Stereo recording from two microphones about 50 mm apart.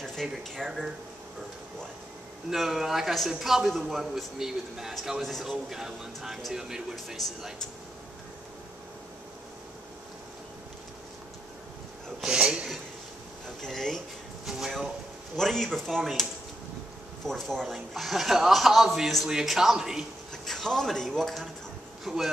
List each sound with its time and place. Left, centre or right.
0.0 s a sound: centre
0.6 s a man's voice: centre
2.5 s a man's voice: centre
12.3 s a sound: centre
13.6 s a sound: centre
14.4 s drawer open or close: centre
15.3 s a man's voice: centre
17.3 s speech: centre
17.6 s a man's voice: centre
20.4 s speech: centre